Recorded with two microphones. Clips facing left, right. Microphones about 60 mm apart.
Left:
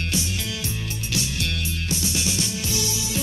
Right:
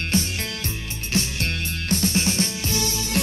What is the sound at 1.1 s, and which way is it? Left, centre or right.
Music, right.